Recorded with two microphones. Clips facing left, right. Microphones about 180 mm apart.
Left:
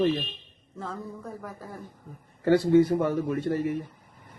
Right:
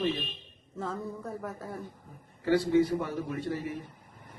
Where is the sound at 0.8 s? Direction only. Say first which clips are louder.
Right 1 dB; centre (ahead or behind).